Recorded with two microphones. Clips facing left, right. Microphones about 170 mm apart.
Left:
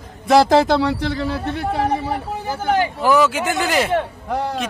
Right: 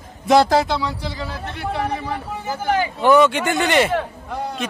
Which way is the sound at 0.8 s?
65° left (ahead or behind).